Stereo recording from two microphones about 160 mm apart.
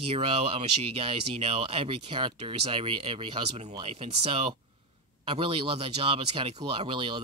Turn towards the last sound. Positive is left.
turn(degrees=-30)  # may be behind; listen again after turning